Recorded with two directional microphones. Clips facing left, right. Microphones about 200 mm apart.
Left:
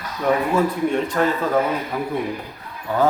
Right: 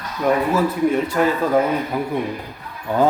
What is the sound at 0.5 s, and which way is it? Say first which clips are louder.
A man's voice: right 1 dB; 5° right (ahead or behind).